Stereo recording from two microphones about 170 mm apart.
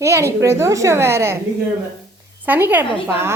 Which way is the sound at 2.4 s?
10° right (ahead or behind).